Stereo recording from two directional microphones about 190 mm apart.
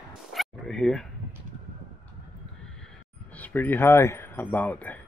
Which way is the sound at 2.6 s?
5° left (ahead or behind).